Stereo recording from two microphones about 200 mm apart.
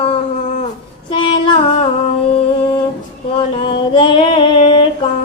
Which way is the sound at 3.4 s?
25° left (ahead or behind).